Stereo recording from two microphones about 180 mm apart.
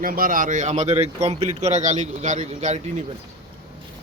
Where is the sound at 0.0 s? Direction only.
50° right (ahead or behind).